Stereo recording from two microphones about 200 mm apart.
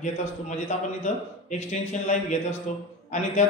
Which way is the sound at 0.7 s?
35° left (ahead or behind).